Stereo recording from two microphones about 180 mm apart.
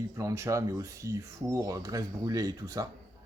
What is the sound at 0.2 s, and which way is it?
Speech, 20° right (ahead or behind).